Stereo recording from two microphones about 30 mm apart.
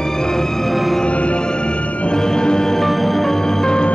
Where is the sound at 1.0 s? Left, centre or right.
Left.